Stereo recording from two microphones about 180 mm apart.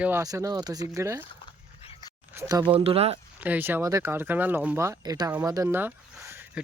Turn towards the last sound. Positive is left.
turn(degrees=-10)  # may be behind; listen again after turning